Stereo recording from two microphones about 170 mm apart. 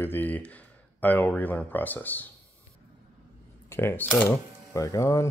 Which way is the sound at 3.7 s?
15° left (ahead or behind).